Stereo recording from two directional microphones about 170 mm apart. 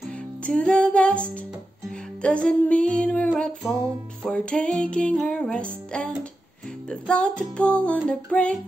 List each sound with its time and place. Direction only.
0.4 s music: 5° left (ahead or behind)